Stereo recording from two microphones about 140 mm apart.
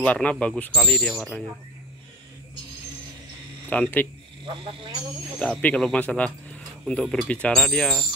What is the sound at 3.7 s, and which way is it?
Speech, 10° left (ahead or behind).